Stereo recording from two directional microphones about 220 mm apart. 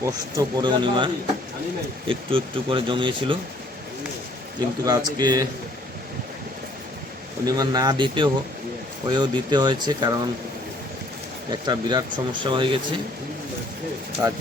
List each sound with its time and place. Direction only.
0.0 s speech: 15° right (ahead or behind)
4.9 s speech: 15° right (ahead or behind)
7.4 s speech: 15° right (ahead or behind)
11.5 s speech: 20° right (ahead or behind)